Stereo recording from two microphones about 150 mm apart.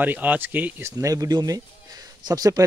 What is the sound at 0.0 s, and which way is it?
Speech, 10° right (ahead or behind).